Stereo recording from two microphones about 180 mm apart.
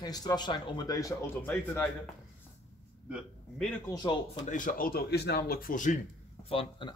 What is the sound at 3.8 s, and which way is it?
Speech, 25° left (ahead or behind).